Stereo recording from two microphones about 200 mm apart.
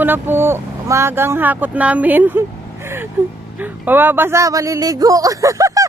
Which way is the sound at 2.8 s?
10° right (ahead or behind).